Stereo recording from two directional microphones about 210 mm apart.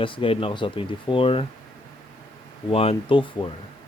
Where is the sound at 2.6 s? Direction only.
25° left (ahead or behind).